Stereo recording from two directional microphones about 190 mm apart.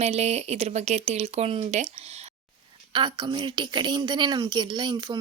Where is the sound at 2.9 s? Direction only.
25° right (ahead or behind).